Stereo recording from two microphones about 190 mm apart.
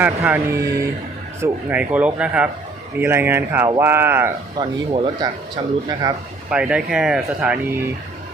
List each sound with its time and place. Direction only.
0.0 s speech: 10° right (ahead or behind)
6.5 s speech: 5° right (ahead or behind)